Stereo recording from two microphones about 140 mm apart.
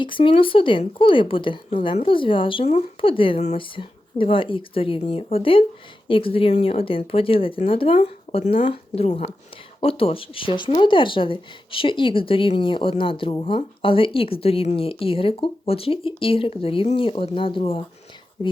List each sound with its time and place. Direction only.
0.0 s speech: 35° left (ahead or behind)